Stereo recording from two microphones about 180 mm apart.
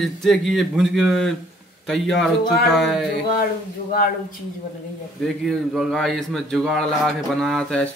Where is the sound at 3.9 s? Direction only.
55° left (ahead or behind).